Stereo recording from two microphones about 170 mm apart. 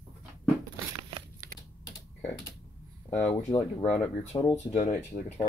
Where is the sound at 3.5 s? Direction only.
25° left (ahead or behind).